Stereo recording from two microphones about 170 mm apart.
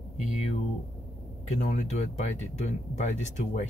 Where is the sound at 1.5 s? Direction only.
45° left (ahead or behind).